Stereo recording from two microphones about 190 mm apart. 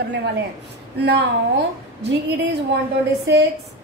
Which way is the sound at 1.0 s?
60° right (ahead or behind).